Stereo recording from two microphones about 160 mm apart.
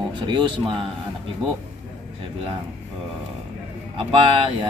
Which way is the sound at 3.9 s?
35° right (ahead or behind).